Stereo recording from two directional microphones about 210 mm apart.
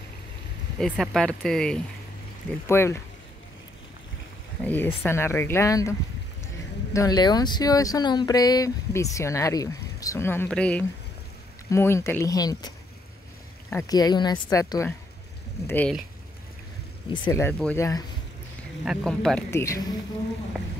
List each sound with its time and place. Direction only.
0.7 s speech: centre (ahead or behind)
4.6 s speech: 10° left (ahead or behind)
17.2 s speech: 10° left (ahead or behind)
18.9 s speech: centre (ahead or behind)
19.6 s speech: 15° left (ahead or behind)